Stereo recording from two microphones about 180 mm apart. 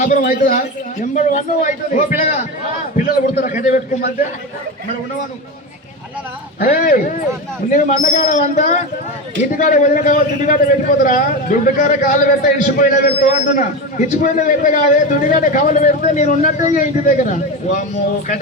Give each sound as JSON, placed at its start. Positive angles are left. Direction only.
{"t": 0.0, "sound": "a man's voice", "side_deg": 50}
{"t": 1.1, "sound": "a man's voice", "side_deg": 40}
{"t": 6.6, "sound": "a man's voice", "side_deg": 50}